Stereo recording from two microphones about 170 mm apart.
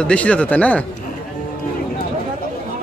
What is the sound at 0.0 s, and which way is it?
Speech, 5° left (ahead or behind).